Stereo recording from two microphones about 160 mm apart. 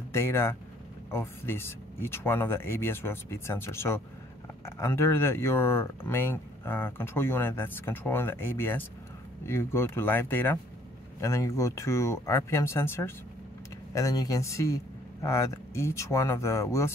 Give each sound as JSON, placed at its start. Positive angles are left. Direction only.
{"t": 0.1, "sound": "speech", "side_deg": 15}